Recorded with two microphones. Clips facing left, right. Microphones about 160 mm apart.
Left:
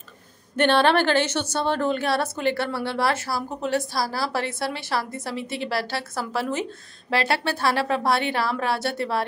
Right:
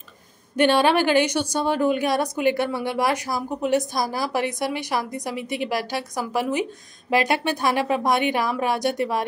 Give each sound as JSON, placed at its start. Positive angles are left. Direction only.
{"t": 0.6, "sound": "a woman's voice", "side_deg": -10}